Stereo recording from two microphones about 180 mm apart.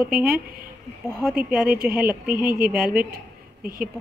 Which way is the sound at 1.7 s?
55° right (ahead or behind).